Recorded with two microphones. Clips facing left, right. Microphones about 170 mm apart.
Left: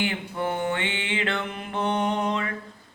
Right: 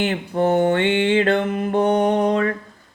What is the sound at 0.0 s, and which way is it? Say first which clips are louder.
Mantra: right 8 dB; 45° right (ahead or behind).